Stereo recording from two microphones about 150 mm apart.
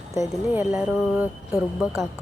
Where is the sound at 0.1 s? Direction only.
20° right (ahead or behind).